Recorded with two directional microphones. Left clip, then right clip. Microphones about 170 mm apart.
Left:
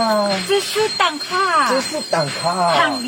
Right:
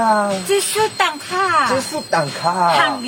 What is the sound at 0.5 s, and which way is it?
Speech, 50° right (ahead or behind).